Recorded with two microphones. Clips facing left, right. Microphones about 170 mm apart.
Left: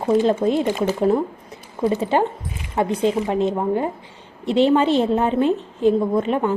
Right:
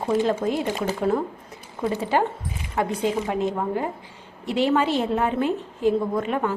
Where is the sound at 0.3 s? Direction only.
25° left (ahead or behind).